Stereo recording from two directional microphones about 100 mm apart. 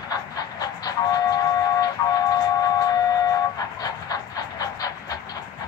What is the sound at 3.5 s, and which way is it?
Train, 40° left (ahead or behind).